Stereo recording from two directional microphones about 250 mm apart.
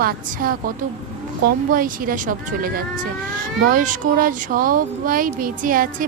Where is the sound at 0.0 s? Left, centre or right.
Right.